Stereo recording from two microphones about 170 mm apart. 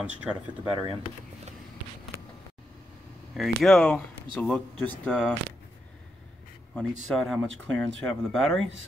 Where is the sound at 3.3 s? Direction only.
Centre (ahead or behind).